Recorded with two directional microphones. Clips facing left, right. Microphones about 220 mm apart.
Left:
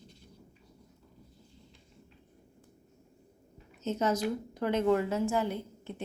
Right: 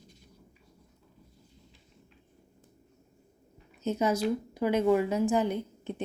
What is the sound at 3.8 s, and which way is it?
Speech, 10° right (ahead or behind).